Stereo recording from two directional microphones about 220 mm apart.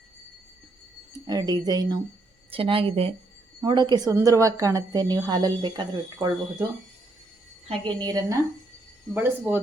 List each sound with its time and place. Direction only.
1.3 s a woman's voice: 15° right (ahead or behind)
7.7 s a woman's voice: 20° right (ahead or behind)